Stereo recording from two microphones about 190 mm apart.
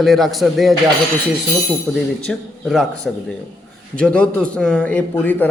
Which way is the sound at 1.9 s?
5° left (ahead or behind).